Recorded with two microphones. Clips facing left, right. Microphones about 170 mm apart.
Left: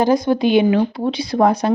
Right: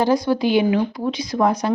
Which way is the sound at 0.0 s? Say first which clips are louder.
Left 3 dB; 20° left (ahead or behind).